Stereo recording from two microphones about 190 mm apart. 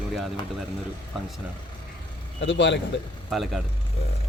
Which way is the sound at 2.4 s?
70° left (ahead or behind).